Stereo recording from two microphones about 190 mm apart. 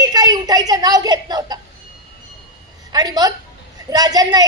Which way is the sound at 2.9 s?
20° right (ahead or behind).